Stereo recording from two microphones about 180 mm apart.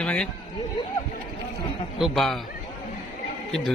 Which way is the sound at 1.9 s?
Centre (ahead or behind).